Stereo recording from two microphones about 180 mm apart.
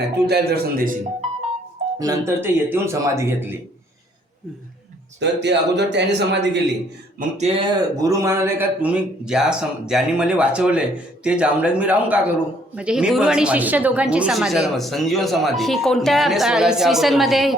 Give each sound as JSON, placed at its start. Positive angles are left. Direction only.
{"t": 0.3, "sound": "a man's voice", "side_deg": -60}
{"t": 2.0, "sound": "speech", "side_deg": -15}
{"t": 5.2, "sound": "a man's voice", "side_deg": -70}
{"t": 7.2, "sound": "speech", "side_deg": -40}
{"t": 7.6, "sound": "a woman's voice", "side_deg": -20}